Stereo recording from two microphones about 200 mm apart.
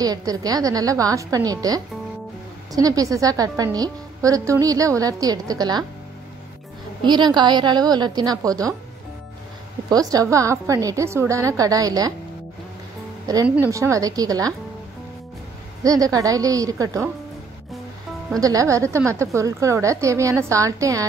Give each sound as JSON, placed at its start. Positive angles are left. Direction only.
{"t": 0.0, "sound": "a woman's voice", "side_deg": -20}
{"t": 7.0, "sound": "a woman's voice", "side_deg": -20}
{"t": 9.8, "sound": "a woman's voice", "side_deg": -20}
{"t": 13.3, "sound": "a woman's voice", "side_deg": -15}
{"t": 15.8, "sound": "a woman's voice", "side_deg": -15}
{"t": 18.4, "sound": "a woman's voice", "side_deg": -15}